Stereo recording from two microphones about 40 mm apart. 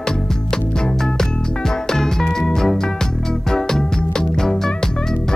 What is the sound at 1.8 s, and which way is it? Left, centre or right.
Music, centre.